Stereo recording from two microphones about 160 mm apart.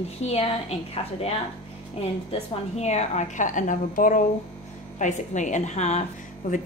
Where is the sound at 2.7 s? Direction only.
45° left (ahead or behind).